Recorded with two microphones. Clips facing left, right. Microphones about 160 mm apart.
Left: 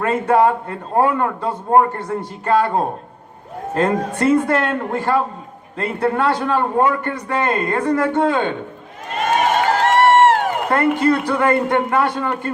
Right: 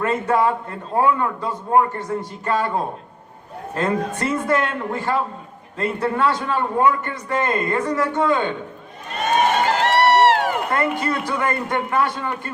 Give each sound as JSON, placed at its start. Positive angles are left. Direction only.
{"t": 0.0, "sound": "a man's voice", "side_deg": 50}
{"t": 9.8, "sound": "a man's voice", "side_deg": 50}